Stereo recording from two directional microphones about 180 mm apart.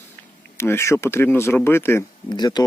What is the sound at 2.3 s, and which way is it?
Speech, 25° left (ahead or behind).